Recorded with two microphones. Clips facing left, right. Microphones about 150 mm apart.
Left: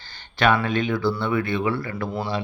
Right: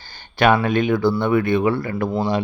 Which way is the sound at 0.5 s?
50° right (ahead or behind).